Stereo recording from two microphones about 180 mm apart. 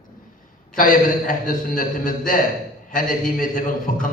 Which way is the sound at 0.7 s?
50° left (ahead or behind).